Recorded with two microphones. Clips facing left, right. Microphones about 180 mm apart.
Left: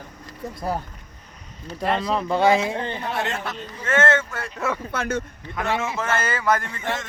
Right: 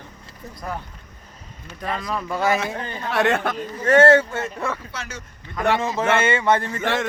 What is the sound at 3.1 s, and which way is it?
Speech, 70° right (ahead or behind).